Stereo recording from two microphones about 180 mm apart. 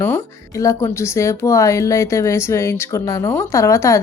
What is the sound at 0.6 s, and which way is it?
Speech, 15° left (ahead or behind).